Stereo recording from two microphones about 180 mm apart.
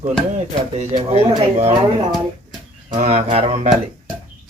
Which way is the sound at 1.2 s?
35° right (ahead or behind).